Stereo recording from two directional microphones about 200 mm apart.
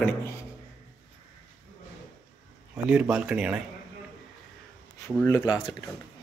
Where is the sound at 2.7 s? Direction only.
5° right (ahead or behind).